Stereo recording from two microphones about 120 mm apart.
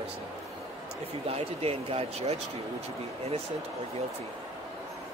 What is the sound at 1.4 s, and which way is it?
Speech, 55° right (ahead or behind).